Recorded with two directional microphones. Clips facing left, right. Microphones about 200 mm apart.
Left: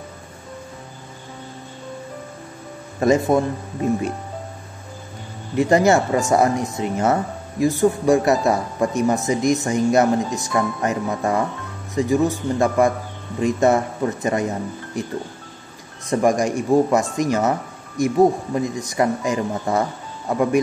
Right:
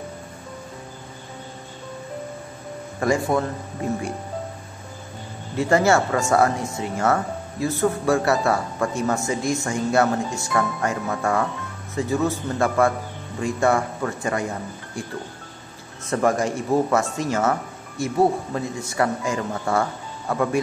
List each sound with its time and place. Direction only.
3.0 s speech: 20° left (ahead or behind)
5.6 s speech: 15° left (ahead or behind)